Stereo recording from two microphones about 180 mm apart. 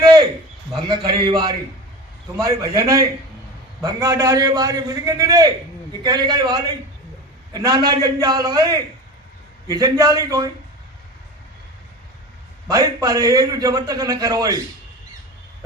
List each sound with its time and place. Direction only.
0.9 s a man's voice: 25° right (ahead or behind)
12.6 s a man's voice: 20° right (ahead or behind)